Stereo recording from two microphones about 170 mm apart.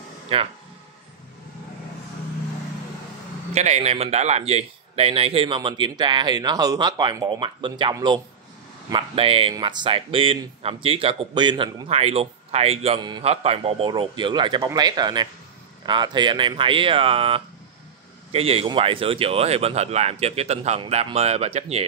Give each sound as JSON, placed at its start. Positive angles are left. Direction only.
{"t": 0.3, "sound": "speech", "side_deg": -30}
{"t": 3.5, "sound": "a man's voice", "side_deg": -40}